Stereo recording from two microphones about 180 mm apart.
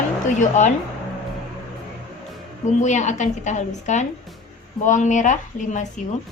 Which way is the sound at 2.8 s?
40° left (ahead or behind).